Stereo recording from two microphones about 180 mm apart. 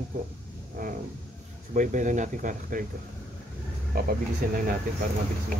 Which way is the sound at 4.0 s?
55° right (ahead or behind).